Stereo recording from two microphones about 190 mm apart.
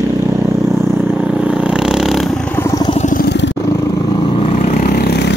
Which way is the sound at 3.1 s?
65° left (ahead or behind).